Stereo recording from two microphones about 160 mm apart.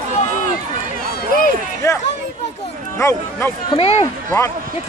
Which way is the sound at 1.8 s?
20° left (ahead or behind).